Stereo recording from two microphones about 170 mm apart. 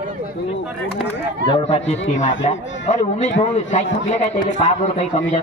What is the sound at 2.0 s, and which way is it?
A man's voice, 45° left (ahead or behind).